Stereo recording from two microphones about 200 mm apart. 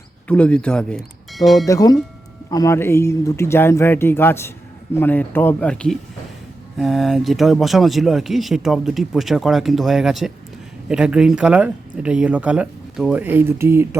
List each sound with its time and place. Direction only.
0.3 s speech: 5° left (ahead or behind)
1.6 s speech: 20° left (ahead or behind); by 14.0 s 10° right (ahead or behind)